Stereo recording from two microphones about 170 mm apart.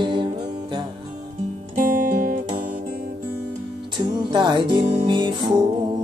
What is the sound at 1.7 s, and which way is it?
Music, 55° right (ahead or behind).